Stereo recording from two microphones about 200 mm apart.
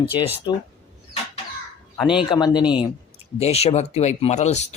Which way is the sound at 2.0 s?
5° right (ahead or behind).